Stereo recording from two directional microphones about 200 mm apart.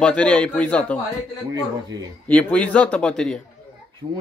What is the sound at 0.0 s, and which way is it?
Speech, 5° left (ahead or behind).